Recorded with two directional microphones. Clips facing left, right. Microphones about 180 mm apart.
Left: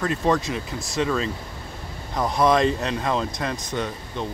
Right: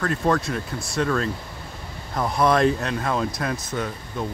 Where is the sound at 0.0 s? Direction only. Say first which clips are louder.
Even; centre (ahead or behind).